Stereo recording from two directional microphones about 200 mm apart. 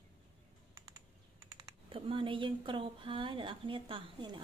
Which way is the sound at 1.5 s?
25° right (ahead or behind).